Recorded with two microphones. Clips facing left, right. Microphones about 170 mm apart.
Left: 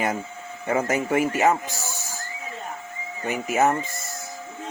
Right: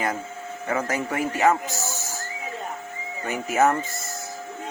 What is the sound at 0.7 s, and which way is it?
Speech, 20° left (ahead or behind).